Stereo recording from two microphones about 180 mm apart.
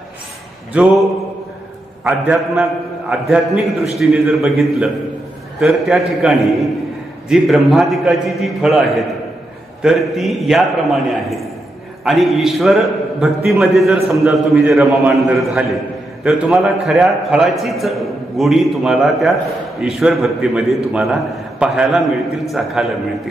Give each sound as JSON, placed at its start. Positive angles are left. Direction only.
{"t": 2.0, "sound": "a man's voice", "side_deg": 0}